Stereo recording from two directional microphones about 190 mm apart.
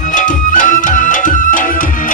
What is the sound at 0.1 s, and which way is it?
Music, 40° left (ahead or behind).